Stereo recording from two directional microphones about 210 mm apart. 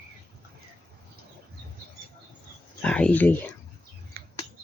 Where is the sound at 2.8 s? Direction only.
5° left (ahead or behind).